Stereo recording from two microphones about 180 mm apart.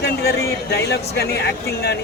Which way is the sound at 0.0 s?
65° left (ahead or behind).